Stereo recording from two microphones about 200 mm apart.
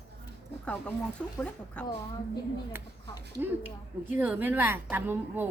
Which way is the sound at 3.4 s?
10° right (ahead or behind).